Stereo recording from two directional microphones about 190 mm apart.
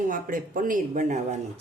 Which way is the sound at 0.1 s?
45° right (ahead or behind).